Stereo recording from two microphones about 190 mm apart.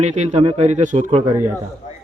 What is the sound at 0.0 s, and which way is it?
Speech, 35° right (ahead or behind).